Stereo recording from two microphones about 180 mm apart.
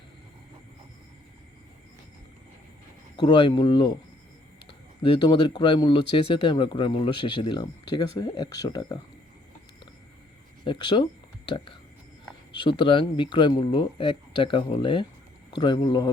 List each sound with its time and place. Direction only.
3.2 s speech: 25° left (ahead or behind)
5.0 s speech: 30° left (ahead or behind)
10.6 s speech: 25° left (ahead or behind)